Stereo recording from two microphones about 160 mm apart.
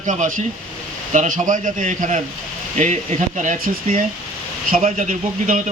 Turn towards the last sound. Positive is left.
turn(degrees=-55)  # may be behind; listen again after turning